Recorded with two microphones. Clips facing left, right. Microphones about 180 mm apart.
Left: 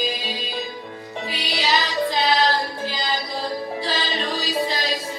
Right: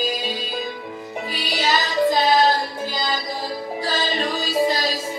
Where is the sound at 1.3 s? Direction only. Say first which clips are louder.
Right 1 dB; 45° right (ahead or behind).